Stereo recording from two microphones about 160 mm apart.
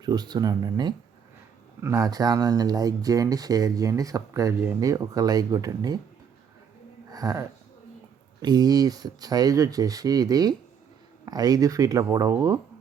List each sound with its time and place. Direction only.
0.0 s speech: 25° right (ahead or behind)
7.1 s speech: 20° right (ahead or behind)